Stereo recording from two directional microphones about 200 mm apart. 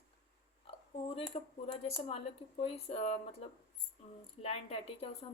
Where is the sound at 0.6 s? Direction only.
30° left (ahead or behind).